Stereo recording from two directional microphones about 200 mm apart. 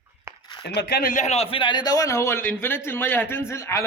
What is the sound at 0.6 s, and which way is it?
A man's voice, 55° left (ahead or behind).